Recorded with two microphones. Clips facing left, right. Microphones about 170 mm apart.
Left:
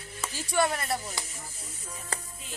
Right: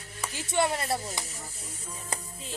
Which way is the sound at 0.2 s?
20° right (ahead or behind).